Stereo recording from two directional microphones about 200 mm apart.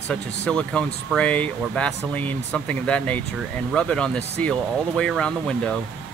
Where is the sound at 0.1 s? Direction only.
5° left (ahead or behind).